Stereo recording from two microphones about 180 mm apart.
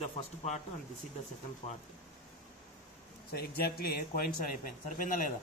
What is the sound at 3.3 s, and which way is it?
Speech, 60° left (ahead or behind).